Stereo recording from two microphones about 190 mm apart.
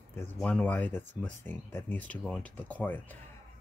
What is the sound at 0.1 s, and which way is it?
Speech, 10° left (ahead or behind).